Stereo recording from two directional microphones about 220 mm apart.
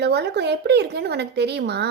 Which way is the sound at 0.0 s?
50° right (ahead or behind).